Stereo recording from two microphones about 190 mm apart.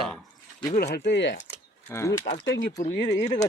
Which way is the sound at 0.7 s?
45° left (ahead or behind).